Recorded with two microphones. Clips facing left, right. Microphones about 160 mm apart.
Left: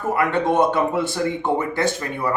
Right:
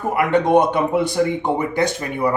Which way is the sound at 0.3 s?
15° right (ahead or behind).